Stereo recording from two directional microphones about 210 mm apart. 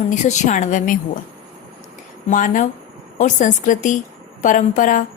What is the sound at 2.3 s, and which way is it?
Speech, 40° left (ahead or behind).